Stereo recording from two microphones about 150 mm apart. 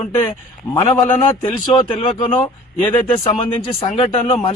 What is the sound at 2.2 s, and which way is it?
Speech, 35° left (ahead or behind).